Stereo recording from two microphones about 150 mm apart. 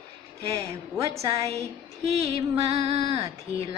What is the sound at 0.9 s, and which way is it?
Speech, 20° right (ahead or behind).